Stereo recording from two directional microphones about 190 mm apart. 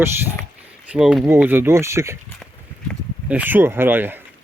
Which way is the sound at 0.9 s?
5° right (ahead or behind).